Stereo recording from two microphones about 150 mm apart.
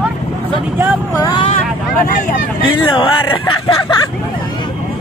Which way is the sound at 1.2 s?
30° left (ahead or behind).